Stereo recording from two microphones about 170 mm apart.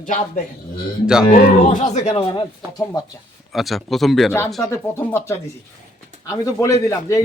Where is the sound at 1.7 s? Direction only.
45° left (ahead or behind).